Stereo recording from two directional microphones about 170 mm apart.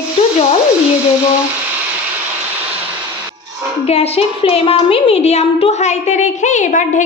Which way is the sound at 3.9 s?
35° left (ahead or behind).